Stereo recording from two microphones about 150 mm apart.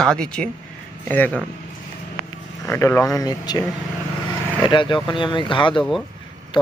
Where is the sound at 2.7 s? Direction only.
15° left (ahead or behind).